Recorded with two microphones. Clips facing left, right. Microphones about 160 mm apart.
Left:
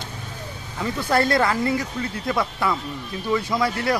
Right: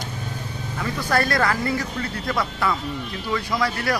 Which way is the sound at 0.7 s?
25° left (ahead or behind).